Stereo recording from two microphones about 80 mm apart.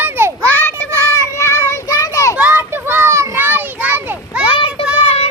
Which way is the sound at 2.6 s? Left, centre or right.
Right.